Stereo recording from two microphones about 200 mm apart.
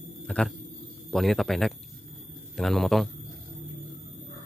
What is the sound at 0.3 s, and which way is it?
A man's voice, 5° left (ahead or behind).